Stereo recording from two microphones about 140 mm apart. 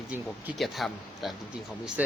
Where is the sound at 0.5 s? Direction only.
Centre (ahead or behind).